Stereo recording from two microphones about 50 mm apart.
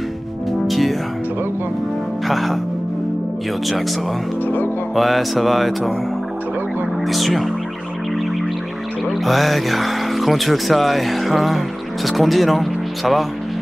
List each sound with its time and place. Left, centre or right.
0.5 s music: centre
2.2 s speech: centre
4.9 s speech: centre
7.1 s speech: centre
9.2 s speech: centre